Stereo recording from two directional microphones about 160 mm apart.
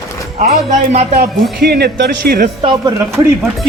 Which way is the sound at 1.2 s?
85° right.